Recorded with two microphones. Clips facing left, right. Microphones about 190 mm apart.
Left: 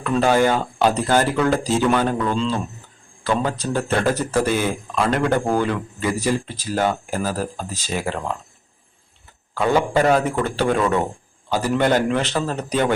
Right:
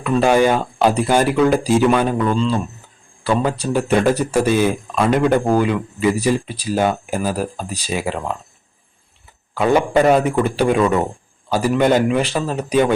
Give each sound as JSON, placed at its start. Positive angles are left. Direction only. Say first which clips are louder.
{"t": 0.0, "sound": "speech", "louder": "right 3 dB", "side_deg": -15}
{"t": 9.6, "sound": "speech", "louder": "right 3 dB", "side_deg": -15}